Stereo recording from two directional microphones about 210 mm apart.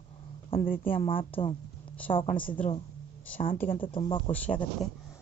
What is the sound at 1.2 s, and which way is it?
Speech, 25° left (ahead or behind).